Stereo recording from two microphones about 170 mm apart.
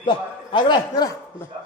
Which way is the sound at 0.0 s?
25° left (ahead or behind).